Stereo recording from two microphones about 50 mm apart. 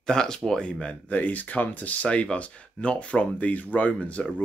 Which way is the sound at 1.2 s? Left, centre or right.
Left.